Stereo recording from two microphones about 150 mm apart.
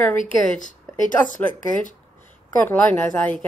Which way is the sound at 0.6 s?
60° left (ahead or behind).